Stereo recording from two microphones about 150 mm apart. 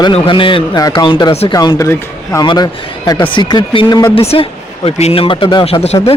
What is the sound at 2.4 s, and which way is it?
Speech, 30° left (ahead or behind).